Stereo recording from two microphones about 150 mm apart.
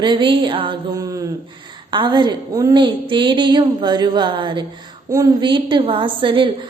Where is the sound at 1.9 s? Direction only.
30° right (ahead or behind).